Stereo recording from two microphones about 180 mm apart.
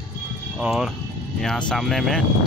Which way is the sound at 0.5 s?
5° right (ahead or behind).